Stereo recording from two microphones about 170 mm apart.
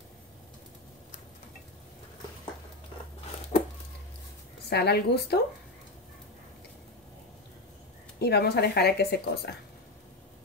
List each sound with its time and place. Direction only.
3.5 s a sound: 45° left (ahead or behind)
4.6 s a woman's voice: 75° left (ahead or behind)
8.2 s a woman's voice: 70° left (ahead or behind)